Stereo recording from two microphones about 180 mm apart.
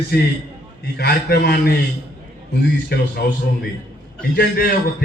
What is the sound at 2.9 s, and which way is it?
Speech, 60° left (ahead or behind).